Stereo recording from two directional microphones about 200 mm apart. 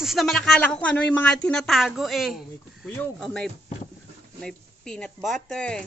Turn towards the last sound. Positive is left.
turn(degrees=5)  # may be behind; listen again after turning